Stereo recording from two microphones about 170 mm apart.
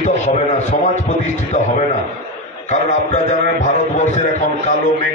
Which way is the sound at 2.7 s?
45° left (ahead or behind).